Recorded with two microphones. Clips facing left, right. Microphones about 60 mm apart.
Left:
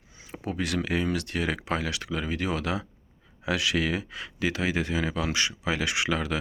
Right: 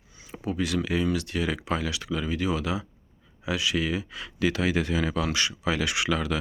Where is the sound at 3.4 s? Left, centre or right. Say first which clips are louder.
Left 1 dB; left.